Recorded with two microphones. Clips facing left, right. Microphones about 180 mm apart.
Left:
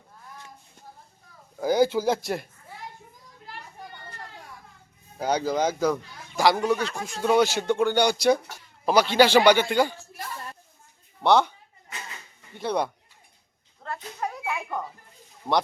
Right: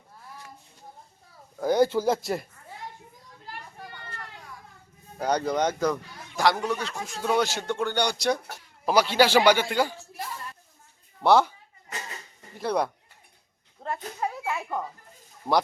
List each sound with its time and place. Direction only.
1.5 s speech: centre (ahead or behind)
5.1 s speech: centre (ahead or behind)
8.9 s speech: 5° right (ahead or behind)
11.2 s speech: 5° right (ahead or behind)
12.5 s speech: centre (ahead or behind)
13.8 s a sound: 25° right (ahead or behind)
14.2 s speech: 5° right (ahead or behind)